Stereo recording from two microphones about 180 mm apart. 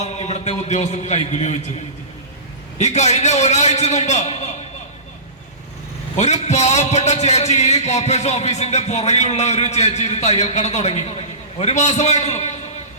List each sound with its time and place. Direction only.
0.0 s a man's voice: 40° left (ahead or behind)
2.7 s a man's voice: 40° left (ahead or behind)
6.1 s a man's voice: 40° left (ahead or behind)